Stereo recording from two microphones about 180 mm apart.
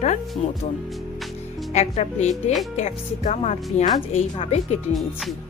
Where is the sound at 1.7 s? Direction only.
35° left (ahead or behind).